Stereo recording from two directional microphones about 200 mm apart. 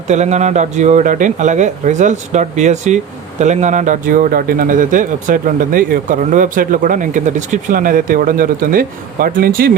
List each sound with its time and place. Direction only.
0.1 s a man's voice: 35° right (ahead or behind)